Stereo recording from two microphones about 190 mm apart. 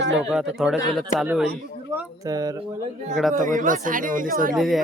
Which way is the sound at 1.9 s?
15° right (ahead or behind).